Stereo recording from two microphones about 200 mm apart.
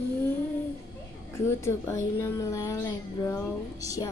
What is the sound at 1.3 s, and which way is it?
Speech, 15° left (ahead or behind).